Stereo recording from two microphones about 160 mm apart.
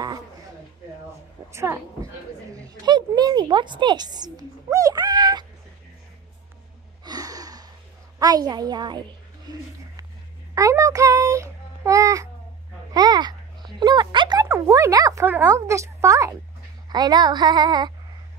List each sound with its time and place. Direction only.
1.5 s a woman's voice: 15° right (ahead or behind)
7.1 s a sound: 20° right (ahead or behind)
8.2 s speech: 25° right (ahead or behind)
10.5 s child singing: 20° right (ahead or behind)
12.9 s a sound: 25° right (ahead or behind)
14.5 s speech: 20° right (ahead or behind)